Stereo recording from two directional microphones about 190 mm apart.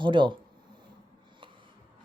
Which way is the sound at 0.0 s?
25° right (ahead or behind).